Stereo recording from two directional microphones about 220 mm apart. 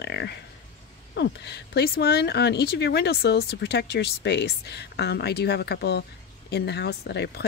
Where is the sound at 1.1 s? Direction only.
50° left (ahead or behind).